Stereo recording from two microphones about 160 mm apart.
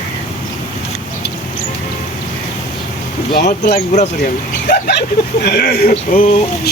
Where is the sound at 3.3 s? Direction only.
75° left (ahead or behind).